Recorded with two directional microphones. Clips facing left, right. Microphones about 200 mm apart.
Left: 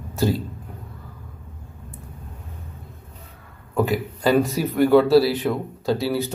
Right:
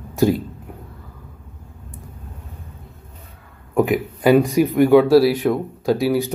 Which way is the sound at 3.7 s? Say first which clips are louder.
Right 4 dB; 15° right (ahead or behind).